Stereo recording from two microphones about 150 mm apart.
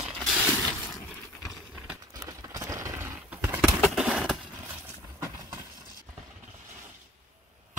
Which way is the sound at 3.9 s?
5° right (ahead or behind).